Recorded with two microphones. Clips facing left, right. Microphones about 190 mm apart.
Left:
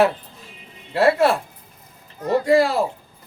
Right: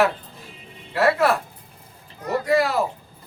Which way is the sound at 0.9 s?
25° left (ahead or behind).